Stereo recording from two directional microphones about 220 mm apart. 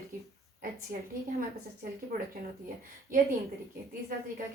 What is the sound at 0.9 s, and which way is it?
Speech, 45° right (ahead or behind).